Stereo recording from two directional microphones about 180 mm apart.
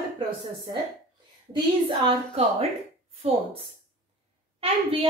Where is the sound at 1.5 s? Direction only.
25° right (ahead or behind).